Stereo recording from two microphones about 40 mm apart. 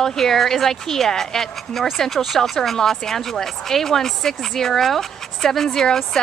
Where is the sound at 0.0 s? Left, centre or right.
Centre.